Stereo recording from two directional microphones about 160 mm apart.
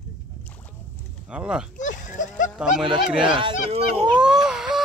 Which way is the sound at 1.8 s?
50° left (ahead or behind).